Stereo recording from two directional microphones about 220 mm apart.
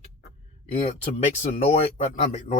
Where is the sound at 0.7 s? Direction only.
30° left (ahead or behind).